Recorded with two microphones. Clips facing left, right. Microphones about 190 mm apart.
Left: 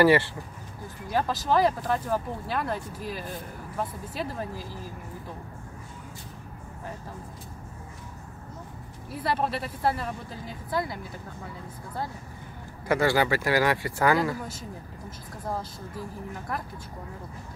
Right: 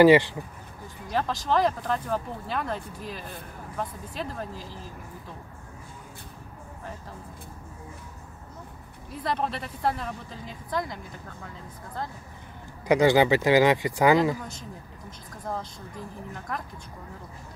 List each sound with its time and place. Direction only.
0.0 s speech: 15° right (ahead or behind)
1.1 s speech: 5° left (ahead or behind)
9.1 s speech: 5° left (ahead or behind)
12.8 s speech: 20° right (ahead or behind)
14.5 s speech: 5° left (ahead or behind)